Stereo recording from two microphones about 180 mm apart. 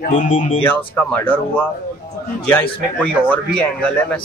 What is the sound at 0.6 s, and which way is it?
Speech, 10° left (ahead or behind).